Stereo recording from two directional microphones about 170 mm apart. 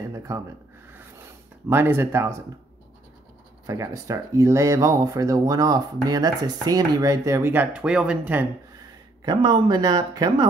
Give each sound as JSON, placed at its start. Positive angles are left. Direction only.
{"t": 0.3, "sound": "speech", "side_deg": -20}
{"t": 1.7, "sound": "speech", "side_deg": -15}
{"t": 3.6, "sound": "speech", "side_deg": -20}
{"t": 9.2, "sound": "speech", "side_deg": -25}